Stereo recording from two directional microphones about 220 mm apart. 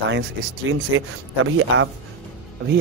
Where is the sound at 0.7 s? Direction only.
65° right (ahead or behind).